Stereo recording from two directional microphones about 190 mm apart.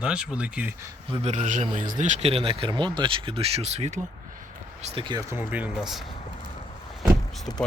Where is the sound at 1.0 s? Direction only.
30° right (ahead or behind).